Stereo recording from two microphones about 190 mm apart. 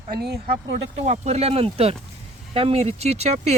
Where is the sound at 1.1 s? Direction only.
35° right (ahead or behind).